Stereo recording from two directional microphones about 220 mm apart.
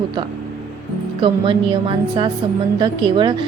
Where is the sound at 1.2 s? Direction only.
25° right (ahead or behind).